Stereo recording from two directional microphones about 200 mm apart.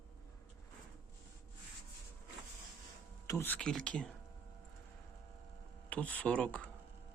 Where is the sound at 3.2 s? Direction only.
15° left (ahead or behind).